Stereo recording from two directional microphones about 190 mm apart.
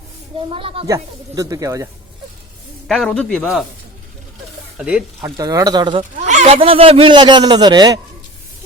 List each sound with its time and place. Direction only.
0.3 s speech: 30° right (ahead or behind)
0.9 s speech: 15° right (ahead or behind)
2.8 s a man's voice: centre (ahead or behind)
4.8 s a man's voice: 5° right (ahead or behind)
5.4 s speech: 20° right (ahead or behind)
6.0 s speech: 40° right (ahead or behind); by 7.9 s 20° right (ahead or behind)